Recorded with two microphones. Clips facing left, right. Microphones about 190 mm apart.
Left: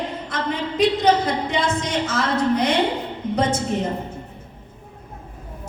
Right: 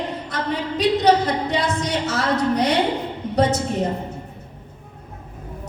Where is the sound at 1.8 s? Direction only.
50° left (ahead or behind).